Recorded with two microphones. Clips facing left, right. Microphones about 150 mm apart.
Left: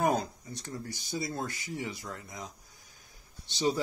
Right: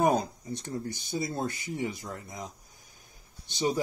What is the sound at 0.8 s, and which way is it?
Speech, 25° right (ahead or behind).